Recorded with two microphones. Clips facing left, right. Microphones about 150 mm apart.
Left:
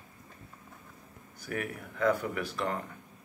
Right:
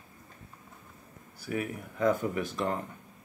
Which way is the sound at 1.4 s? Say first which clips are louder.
Right 2 dB; 15° right (ahead or behind).